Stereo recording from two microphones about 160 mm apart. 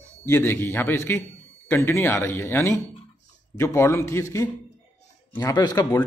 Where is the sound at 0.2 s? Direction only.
15° left (ahead or behind).